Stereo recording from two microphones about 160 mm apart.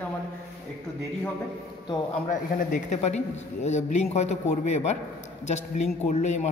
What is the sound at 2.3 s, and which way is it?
A man's voice, 55° left (ahead or behind).